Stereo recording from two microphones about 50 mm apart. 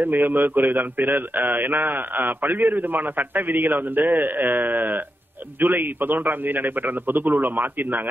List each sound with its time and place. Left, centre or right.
0.0 s a man's voice: right